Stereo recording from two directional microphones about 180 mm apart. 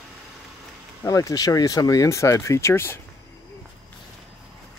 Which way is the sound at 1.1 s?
20° left (ahead or behind).